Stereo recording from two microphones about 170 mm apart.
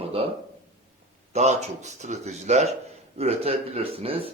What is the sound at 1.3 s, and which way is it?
A man's voice, 40° right (ahead or behind).